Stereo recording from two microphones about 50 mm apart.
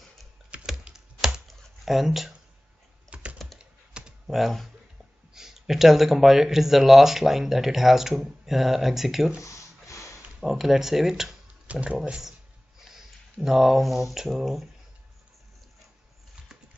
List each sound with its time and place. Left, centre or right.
0.9 s typing: centre
1.9 s speech: centre
3.1 s computer keyboard: right
4.3 s speech: centre
9.4 s a sound: left
10.4 s speech: centre
11.6 s speech: right
12.8 s speech: centre